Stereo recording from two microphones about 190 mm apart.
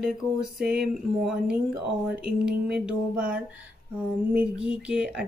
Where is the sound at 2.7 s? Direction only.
5° right (ahead or behind).